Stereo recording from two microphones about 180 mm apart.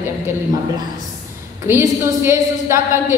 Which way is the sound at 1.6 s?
15° right (ahead or behind).